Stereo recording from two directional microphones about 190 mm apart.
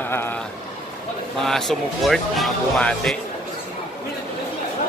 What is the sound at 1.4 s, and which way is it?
Speech, centre (ahead or behind).